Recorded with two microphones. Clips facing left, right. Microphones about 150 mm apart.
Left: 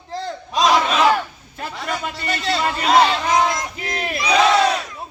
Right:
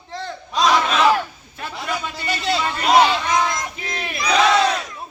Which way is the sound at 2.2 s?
5° right (ahead or behind).